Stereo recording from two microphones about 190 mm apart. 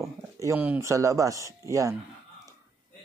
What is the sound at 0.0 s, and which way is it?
Speech, 15° right (ahead or behind).